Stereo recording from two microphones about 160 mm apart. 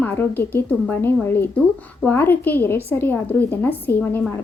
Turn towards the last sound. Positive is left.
turn(degrees=10)  # may be behind; listen again after turning